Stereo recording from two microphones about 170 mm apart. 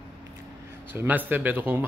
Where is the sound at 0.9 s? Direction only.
10° right (ahead or behind).